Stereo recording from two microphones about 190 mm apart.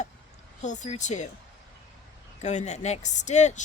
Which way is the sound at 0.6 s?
40° left (ahead or behind).